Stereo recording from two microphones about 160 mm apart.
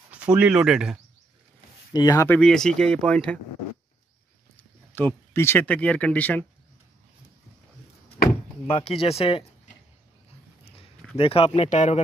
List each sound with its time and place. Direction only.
0.1 s speech: 10° right (ahead or behind)
2.0 s speech: 25° left (ahead or behind)
2.2 s speech: 5° left (ahead or behind)
4.9 s speech: 15° left (ahead or behind)
8.6 s speech: 35° left (ahead or behind)
11.1 s speech: 35° left (ahead or behind)